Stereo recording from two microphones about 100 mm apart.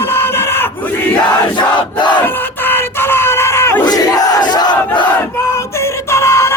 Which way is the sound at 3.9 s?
40° left (ahead or behind).